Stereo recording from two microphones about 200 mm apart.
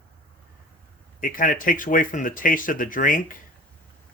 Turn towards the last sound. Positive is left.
turn(degrees=40)  # may be behind; listen again after turning